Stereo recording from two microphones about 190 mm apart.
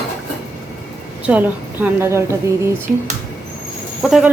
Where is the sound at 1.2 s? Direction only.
10° right (ahead or behind).